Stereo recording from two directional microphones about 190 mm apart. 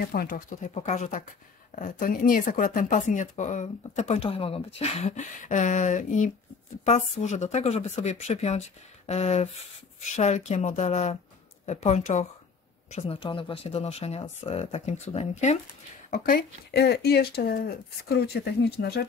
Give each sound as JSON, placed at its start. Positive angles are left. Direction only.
{"t": 0.0, "sound": "speech", "side_deg": 50}
{"t": 16.1, "sound": "speech", "side_deg": 55}